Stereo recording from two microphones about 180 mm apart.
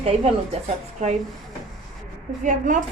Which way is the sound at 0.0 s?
35° right (ahead or behind).